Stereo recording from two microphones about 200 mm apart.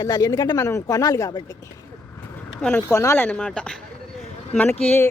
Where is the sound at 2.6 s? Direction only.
10° left (ahead or behind).